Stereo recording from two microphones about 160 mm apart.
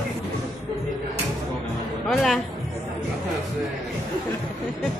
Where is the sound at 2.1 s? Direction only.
Centre (ahead or behind).